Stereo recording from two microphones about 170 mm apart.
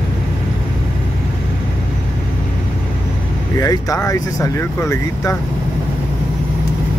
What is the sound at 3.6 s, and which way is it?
Speech, 20° left (ahead or behind).